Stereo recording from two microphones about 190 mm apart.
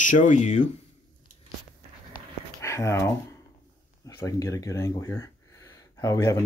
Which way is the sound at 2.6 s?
15° left (ahead or behind).